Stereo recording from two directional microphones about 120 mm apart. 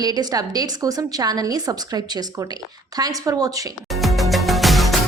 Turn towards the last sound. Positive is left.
turn(degrees=0)  # may be behind; listen again after turning